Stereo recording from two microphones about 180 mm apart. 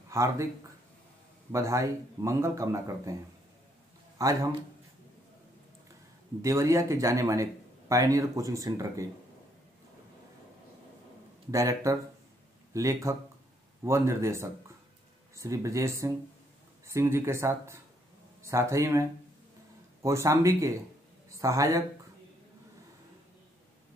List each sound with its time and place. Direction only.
0.1 s speech: 15° right (ahead or behind)
1.5 s speech: 15° right (ahead or behind)
4.2 s a man's voice: 20° right (ahead or behind)
6.4 s speech: 15° right (ahead or behind)
11.5 s a man's voice: 20° right (ahead or behind)